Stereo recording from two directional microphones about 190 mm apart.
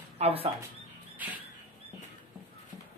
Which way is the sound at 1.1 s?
10° right (ahead or behind).